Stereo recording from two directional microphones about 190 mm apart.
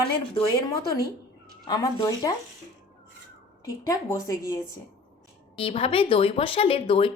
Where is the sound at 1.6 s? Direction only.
20° left (ahead or behind).